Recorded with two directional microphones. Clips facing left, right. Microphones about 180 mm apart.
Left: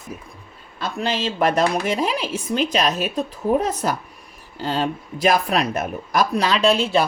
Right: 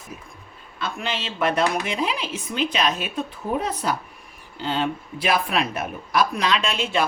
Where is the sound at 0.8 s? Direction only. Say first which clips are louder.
Left 5 dB; 40° left (ahead or behind).